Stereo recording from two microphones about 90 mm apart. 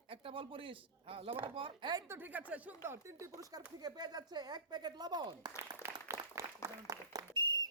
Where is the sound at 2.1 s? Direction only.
20° right (ahead or behind).